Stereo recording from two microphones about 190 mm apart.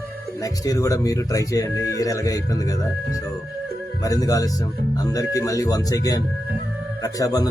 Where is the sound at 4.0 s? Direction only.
20° left (ahead or behind).